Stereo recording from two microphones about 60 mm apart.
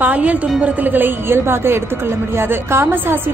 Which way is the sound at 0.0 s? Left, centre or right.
Right.